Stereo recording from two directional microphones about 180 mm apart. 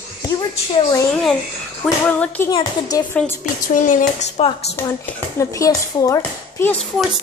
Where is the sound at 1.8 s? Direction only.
5° left (ahead or behind).